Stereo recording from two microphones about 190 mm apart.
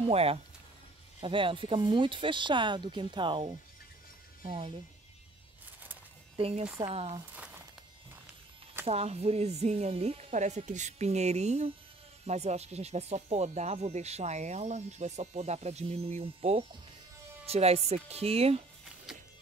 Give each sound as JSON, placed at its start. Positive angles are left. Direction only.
{"t": 0.1, "sound": "speech", "side_deg": -30}
{"t": 6.3, "sound": "speech", "side_deg": -30}
{"t": 7.3, "sound": "a sound", "side_deg": -10}
{"t": 8.8, "sound": "speech", "side_deg": -35}